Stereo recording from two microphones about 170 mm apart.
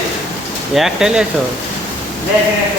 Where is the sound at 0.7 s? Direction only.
5° right (ahead or behind).